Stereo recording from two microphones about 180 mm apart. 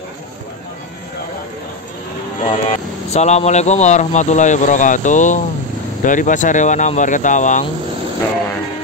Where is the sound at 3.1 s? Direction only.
40° left (ahead or behind).